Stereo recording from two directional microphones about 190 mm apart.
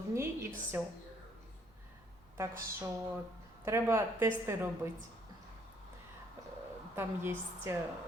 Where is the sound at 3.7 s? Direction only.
15° right (ahead or behind).